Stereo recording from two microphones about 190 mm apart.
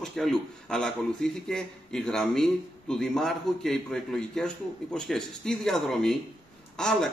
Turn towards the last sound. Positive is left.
turn(degrees=5)  # may be behind; listen again after turning